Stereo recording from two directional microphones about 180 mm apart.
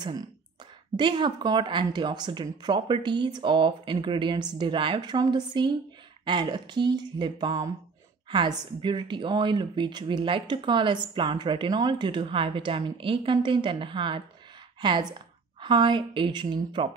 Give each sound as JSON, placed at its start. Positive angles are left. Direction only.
{"t": 0.9, "sound": "a woman's voice", "side_deg": -25}